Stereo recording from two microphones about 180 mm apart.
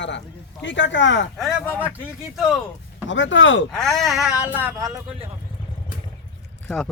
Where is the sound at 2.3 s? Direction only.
Centre (ahead or behind).